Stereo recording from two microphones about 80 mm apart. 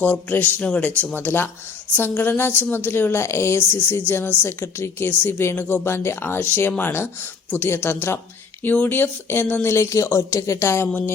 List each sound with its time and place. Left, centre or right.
0.0 s speech: left
9.6 s speech: left